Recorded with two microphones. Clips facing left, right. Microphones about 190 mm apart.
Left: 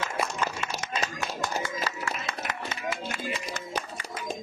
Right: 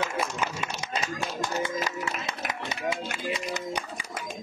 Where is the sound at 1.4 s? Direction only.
20° right (ahead or behind).